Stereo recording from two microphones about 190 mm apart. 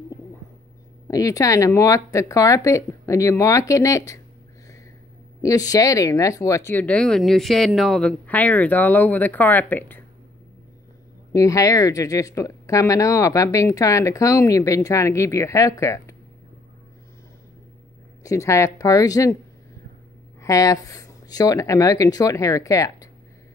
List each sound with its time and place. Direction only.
1.0 s speech: 20° left (ahead or behind)
5.4 s speech: 20° left (ahead or behind)
11.3 s speech: 15° left (ahead or behind)
18.2 s speech: 15° left (ahead or behind)
20.4 s speech: 15° left (ahead or behind)